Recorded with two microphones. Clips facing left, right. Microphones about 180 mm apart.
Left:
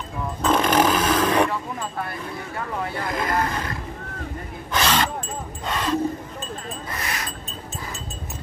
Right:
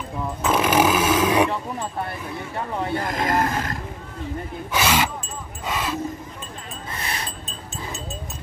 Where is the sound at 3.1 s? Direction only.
45° right (ahead or behind).